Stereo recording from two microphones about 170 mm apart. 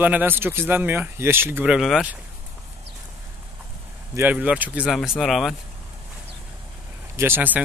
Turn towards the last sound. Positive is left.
turn(degrees=-10)  # may be behind; listen again after turning